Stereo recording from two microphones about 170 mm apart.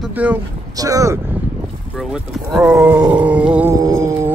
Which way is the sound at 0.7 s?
20° right (ahead or behind).